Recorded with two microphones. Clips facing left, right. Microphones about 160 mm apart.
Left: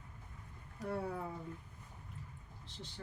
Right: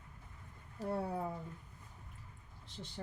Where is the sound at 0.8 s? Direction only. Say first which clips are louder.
Right 2 dB; 30° right (ahead or behind).